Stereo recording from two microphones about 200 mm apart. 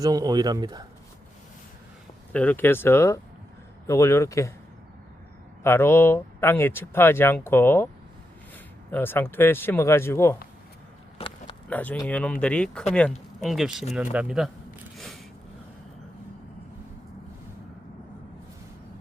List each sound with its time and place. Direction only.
0.0 s speech: 20° right (ahead or behind)
2.3 s speech: 10° left (ahead or behind)
5.6 s speech: 10° left (ahead or behind)
8.9 s speech: 10° left (ahead or behind)
11.7 s speech: 5° left (ahead or behind)
13.9 s a sound: 5° right (ahead or behind)